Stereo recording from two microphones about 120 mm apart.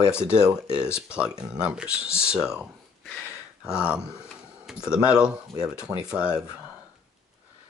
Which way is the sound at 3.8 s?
10° right (ahead or behind).